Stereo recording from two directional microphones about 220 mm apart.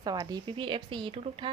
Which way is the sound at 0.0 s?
15° right (ahead or behind).